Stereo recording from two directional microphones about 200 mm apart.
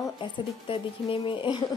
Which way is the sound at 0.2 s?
25° left (ahead or behind).